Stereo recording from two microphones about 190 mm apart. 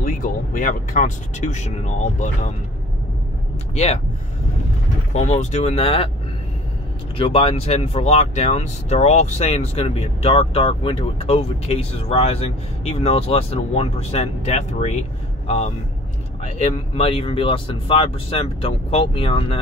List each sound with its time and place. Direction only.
0.0 s speech: 45° left (ahead or behind)
3.7 s speech: 35° left (ahead or behind)
5.1 s speech: 35° left (ahead or behind)
7.2 s speech: 30° left (ahead or behind)